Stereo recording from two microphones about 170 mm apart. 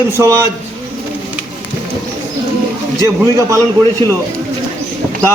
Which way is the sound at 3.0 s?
20° right (ahead or behind).